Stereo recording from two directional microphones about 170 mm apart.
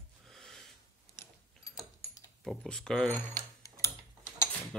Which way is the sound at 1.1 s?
20° left (ahead or behind).